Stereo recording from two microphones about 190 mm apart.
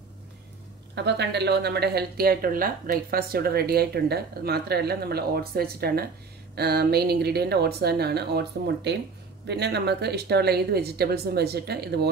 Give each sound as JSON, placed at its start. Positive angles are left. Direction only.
{"t": 0.9, "sound": "speech", "side_deg": -65}